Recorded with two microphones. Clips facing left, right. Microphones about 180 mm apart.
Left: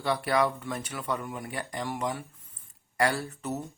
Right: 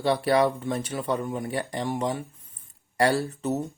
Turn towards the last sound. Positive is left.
turn(degrees=-25)  # may be behind; listen again after turning